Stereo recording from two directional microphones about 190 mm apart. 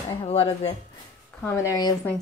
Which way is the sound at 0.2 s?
30° left (ahead or behind).